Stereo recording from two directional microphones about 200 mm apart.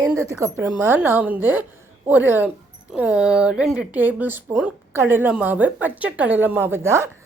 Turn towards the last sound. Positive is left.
turn(degrees=-15)  # may be behind; listen again after turning